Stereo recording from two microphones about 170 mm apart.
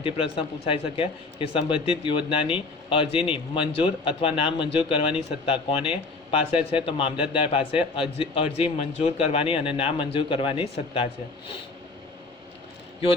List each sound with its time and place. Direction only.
0.0 s speech: 35° left (ahead or behind)